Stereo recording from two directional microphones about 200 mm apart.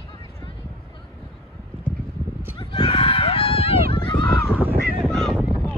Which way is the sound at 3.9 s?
25° left (ahead or behind).